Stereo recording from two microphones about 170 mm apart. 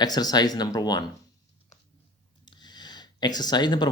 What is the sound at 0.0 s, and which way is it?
Speech, 25° left (ahead or behind).